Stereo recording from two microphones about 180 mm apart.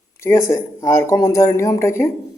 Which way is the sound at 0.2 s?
15° left (ahead or behind).